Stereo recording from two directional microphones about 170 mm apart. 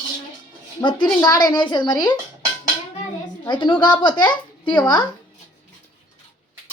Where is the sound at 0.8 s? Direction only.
30° left (ahead or behind).